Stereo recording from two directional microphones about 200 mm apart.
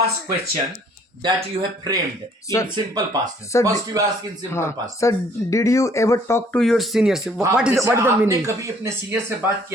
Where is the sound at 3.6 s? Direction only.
15° right (ahead or behind).